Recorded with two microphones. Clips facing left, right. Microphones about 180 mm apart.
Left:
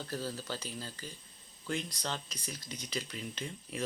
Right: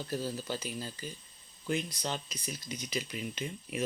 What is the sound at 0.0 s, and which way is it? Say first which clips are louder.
Speech: right 3 dB; 15° right (ahead or behind).